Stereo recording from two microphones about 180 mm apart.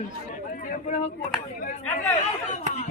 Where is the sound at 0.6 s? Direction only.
40° left (ahead or behind).